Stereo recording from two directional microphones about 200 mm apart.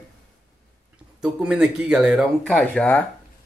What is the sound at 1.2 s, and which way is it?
Speech, 5° right (ahead or behind).